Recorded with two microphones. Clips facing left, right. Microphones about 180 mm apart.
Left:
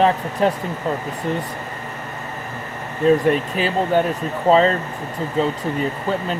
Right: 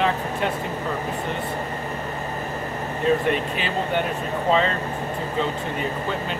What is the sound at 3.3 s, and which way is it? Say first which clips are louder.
Speech: left 5 dB; 40° left (ahead or behind).